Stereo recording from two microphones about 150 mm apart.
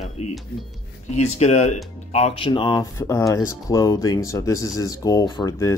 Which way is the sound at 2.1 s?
40° left (ahead or behind).